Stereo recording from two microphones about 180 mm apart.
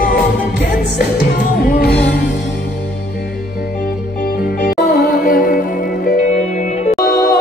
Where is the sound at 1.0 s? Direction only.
60° left (ahead or behind).